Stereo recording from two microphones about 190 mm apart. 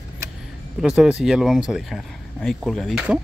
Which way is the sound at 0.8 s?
5° right (ahead or behind).